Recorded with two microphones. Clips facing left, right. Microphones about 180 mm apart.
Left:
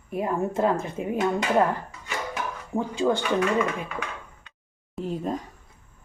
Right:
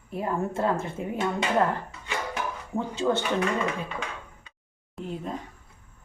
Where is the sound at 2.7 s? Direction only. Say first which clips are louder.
Left 2 dB; 10° left (ahead or behind).